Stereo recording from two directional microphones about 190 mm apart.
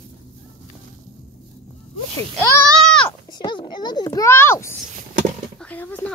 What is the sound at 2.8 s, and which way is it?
Goat, 5° left (ahead or behind).